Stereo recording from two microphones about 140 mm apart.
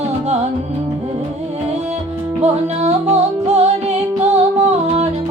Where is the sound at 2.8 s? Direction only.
50° right (ahead or behind).